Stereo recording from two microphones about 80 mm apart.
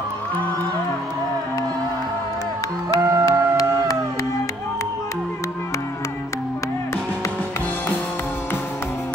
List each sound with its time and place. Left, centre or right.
3.0 s music: right